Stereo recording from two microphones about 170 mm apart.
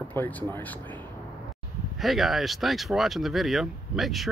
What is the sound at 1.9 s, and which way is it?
Speech, centre (ahead or behind).